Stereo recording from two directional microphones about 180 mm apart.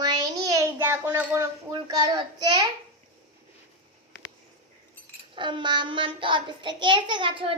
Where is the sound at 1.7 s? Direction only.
20° right (ahead or behind).